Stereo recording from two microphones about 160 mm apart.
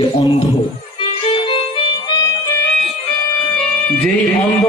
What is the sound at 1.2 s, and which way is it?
Music, 35° left (ahead or behind).